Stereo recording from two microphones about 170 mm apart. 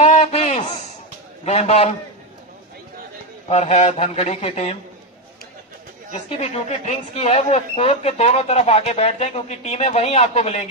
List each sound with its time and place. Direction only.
0.0 s a sound: 40° left (ahead or behind)
1.4 s speech: 40° left (ahead or behind)
3.4 s speech: 40° left (ahead or behind)
6.1 s speech: 40° left (ahead or behind)